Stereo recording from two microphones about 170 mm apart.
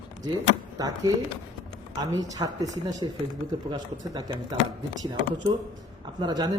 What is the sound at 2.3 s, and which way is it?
A man's voice, 20° right (ahead or behind).